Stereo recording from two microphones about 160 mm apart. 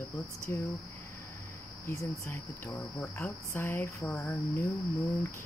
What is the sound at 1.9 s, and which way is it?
Speech, 20° left (ahead or behind).